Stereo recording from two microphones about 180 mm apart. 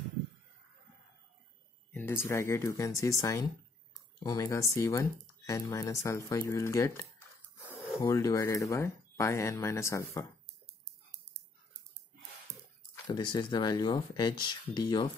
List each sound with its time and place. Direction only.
1.9 s speech: 10° left (ahead or behind)
13.0 s speech: 25° left (ahead or behind)